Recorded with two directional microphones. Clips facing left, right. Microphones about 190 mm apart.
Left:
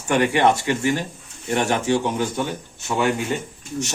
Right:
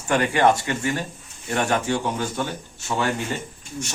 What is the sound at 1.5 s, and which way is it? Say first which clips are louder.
Speech: left 2 dB; 20° left (ahead or behind).